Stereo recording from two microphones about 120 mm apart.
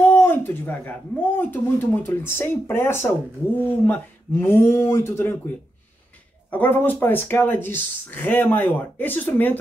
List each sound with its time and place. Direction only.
0.0 s speech: 15° left (ahead or behind)
6.5 s speech: 15° left (ahead or behind)